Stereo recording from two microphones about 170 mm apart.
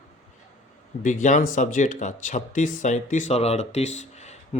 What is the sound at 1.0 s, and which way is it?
Speech, 45° left (ahead or behind).